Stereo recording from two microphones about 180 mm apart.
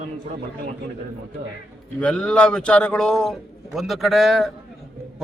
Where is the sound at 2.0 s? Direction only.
5° left (ahead or behind).